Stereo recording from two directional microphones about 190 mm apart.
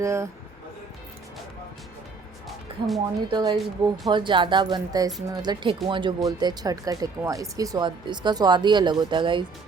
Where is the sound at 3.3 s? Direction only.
25° right (ahead or behind).